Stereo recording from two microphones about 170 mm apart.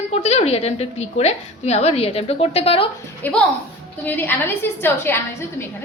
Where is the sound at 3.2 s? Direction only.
10° left (ahead or behind).